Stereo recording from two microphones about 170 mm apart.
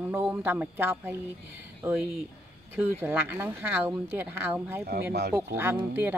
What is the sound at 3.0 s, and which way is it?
Speech, 15° right (ahead or behind).